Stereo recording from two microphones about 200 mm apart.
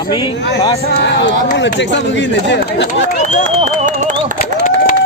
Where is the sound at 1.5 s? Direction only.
60° left (ahead or behind).